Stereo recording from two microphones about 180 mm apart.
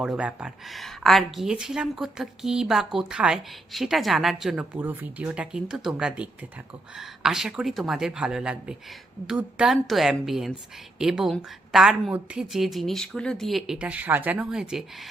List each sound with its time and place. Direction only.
0.0 s speech: 5° right (ahead or behind)